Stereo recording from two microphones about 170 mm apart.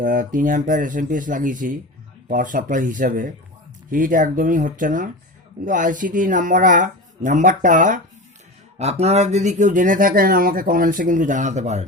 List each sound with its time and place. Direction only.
0.0 s speech: 55° right (ahead or behind)